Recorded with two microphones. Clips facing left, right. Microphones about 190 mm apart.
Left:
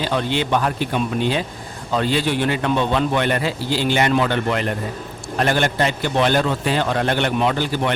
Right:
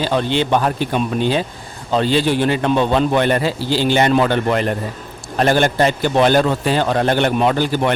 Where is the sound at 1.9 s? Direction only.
30° right (ahead or behind).